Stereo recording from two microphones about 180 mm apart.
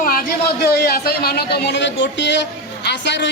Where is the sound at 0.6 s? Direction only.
60° left (ahead or behind).